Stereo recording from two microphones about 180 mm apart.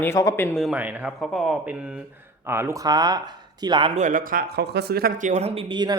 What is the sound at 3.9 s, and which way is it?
A man's voice, 45° right (ahead or behind).